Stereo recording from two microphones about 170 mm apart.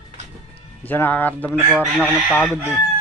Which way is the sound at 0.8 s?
10° left (ahead or behind).